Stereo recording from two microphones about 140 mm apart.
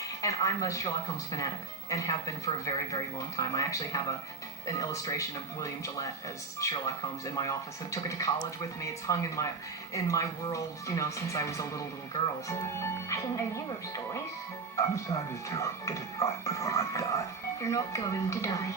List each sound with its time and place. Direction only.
0.2 s speech: 25° left (ahead or behind)